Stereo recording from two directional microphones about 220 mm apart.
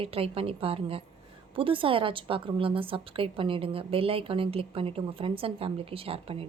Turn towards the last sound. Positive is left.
turn(degrees=-25)  # may be behind; listen again after turning